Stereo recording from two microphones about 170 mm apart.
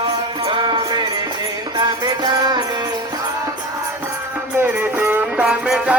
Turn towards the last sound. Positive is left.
turn(degrees=-5)  # may be behind; listen again after turning